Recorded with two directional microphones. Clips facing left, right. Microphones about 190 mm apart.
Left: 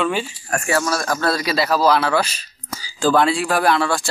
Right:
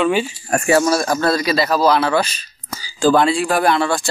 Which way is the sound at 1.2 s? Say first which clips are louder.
Right 3 dB; 5° left (ahead or behind).